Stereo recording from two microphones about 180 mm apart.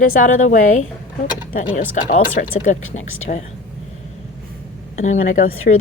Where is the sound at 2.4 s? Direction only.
60° left (ahead or behind).